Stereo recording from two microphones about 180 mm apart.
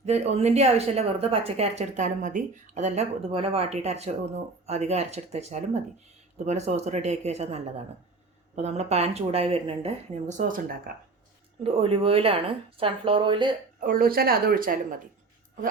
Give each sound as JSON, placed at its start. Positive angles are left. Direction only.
{"t": 0.0, "sound": "a woman's voice", "side_deg": -35}
{"t": 11.6, "sound": "a woman's voice", "side_deg": -30}
{"t": 13.7, "sound": "speech", "side_deg": -50}